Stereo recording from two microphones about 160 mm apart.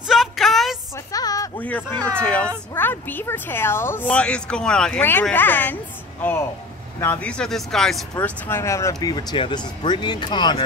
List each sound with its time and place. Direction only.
0.0 s a sound: centre (ahead or behind)
0.9 s music: 20° left (ahead or behind)
1.6 s speech: 10° left (ahead or behind)
7.0 s speech: 10° left (ahead or behind)
8.2 s speech: 15° left (ahead or behind)